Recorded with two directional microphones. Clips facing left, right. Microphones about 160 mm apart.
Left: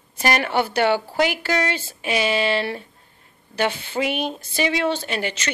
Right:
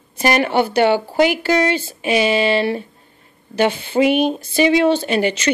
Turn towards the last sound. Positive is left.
turn(degrees=-10)  # may be behind; listen again after turning